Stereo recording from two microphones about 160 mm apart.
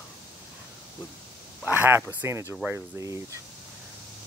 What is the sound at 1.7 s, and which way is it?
Speech, 15° right (ahead or behind).